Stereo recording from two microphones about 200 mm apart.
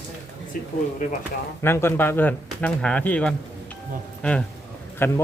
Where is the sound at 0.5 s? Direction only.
45° left (ahead or behind).